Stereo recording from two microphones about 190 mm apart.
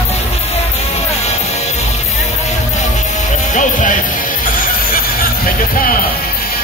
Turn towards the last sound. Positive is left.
turn(degrees=50)  # may be behind; listen again after turning